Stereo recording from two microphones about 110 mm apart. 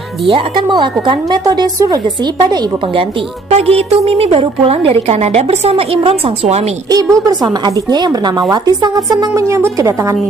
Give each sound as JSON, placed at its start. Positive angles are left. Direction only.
{"t": 0.3, "sound": "a woman's voice", "side_deg": -45}
{"t": 3.0, "sound": "a woman's voice", "side_deg": -65}
{"t": 6.9, "sound": "a woman's voice", "side_deg": -35}